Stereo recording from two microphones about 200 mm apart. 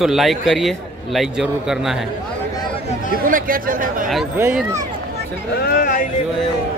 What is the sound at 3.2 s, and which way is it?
Speech, 45° right (ahead or behind).